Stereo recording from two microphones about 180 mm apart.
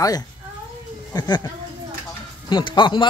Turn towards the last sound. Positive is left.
turn(degrees=25)  # may be behind; listen again after turning